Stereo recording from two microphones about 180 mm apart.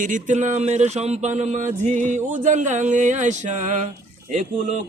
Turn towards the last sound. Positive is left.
turn(degrees=-45)  # may be behind; listen again after turning